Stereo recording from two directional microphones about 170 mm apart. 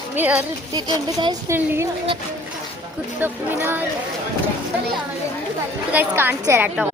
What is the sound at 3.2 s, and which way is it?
Speech, 15° right (ahead or behind).